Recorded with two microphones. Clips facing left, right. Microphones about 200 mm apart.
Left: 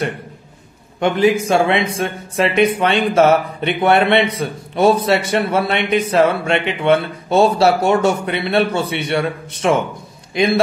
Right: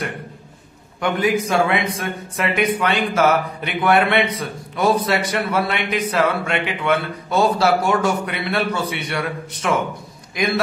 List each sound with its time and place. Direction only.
0.9 s speech: 25° left (ahead or behind)